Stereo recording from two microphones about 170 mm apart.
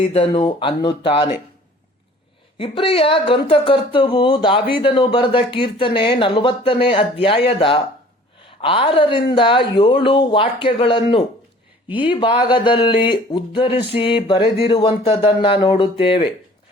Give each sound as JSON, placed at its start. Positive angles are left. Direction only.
{"t": 0.1, "sound": "speech", "side_deg": 35}
{"t": 2.6, "sound": "speech", "side_deg": 30}